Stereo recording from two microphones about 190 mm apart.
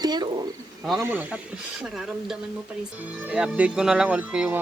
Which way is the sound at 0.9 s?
10° right (ahead or behind).